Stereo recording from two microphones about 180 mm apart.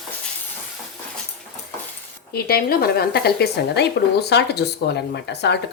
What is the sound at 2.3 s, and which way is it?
A woman's voice, 60° left (ahead or behind).